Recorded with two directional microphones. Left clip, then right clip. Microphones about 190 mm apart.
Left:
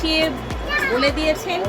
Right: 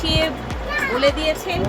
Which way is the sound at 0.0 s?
10° left (ahead or behind).